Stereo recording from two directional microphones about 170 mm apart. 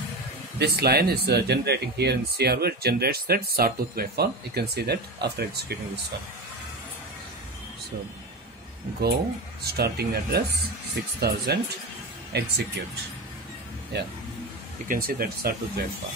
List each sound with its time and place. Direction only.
0.6 s speech: 70° right (ahead or behind)
9.8 s speech: 65° right (ahead or behind)
13.9 s speech: 80° right
14.9 s speech: 60° right (ahead or behind)